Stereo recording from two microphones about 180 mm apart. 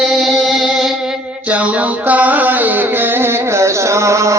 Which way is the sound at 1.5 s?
5° right (ahead or behind).